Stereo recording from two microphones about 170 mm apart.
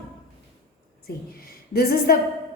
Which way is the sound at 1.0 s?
60° left (ahead or behind).